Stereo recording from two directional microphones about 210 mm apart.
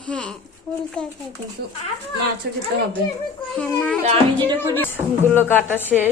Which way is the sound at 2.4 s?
50° right (ahead or behind).